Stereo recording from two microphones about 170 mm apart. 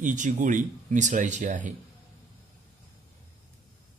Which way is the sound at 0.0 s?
50° right (ahead or behind).